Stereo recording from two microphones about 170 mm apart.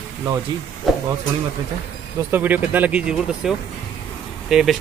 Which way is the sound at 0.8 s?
Centre (ahead or behind).